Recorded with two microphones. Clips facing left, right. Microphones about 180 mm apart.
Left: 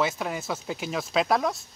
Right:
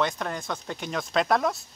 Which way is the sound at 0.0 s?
5° left (ahead or behind).